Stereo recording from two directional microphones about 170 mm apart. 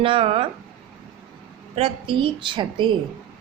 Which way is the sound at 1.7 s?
35° right (ahead or behind).